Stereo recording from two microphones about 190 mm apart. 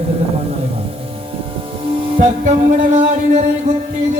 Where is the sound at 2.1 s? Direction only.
40° right (ahead or behind).